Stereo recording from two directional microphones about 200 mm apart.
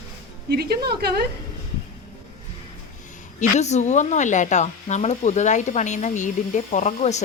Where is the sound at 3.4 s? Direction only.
35° left (ahead or behind).